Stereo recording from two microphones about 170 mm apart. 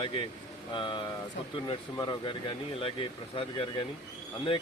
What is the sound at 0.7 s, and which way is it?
Speech, 30° left (ahead or behind).